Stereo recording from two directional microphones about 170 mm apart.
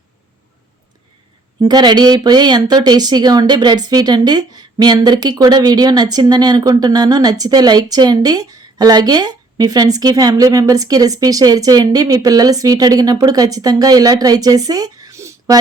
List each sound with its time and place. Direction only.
1.6 s speech: 25° right (ahead or behind)